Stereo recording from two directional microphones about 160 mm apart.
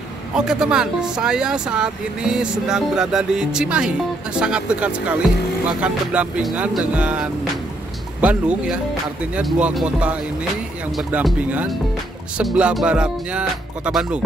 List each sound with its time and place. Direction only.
0.3 s speech: 5° right (ahead or behind)
4.4 s music: 5° right (ahead or behind)
12.4 s music: 5° right (ahead or behind)